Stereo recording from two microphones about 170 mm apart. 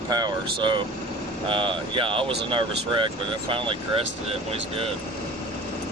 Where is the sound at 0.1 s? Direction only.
25° right (ahead or behind).